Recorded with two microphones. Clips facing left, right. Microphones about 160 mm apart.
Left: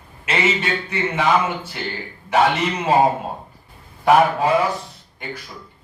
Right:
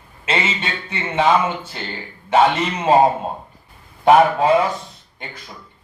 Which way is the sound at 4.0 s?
25° right (ahead or behind).